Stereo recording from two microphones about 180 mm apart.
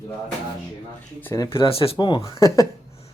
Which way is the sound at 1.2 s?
15° left (ahead or behind).